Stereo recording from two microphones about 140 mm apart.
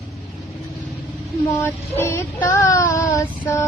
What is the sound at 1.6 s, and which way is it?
Child singing, 15° left (ahead or behind).